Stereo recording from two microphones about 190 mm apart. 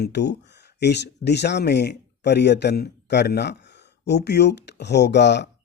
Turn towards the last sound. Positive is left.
turn(degrees=65)  # may be behind; listen again after turning